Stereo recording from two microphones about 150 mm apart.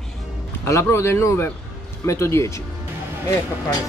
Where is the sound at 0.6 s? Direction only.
15° left (ahead or behind).